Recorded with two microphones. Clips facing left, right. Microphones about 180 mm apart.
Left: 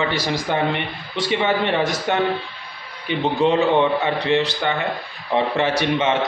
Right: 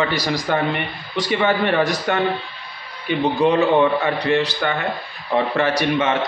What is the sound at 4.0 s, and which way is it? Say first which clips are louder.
Speech: even; 20° left (ahead or behind).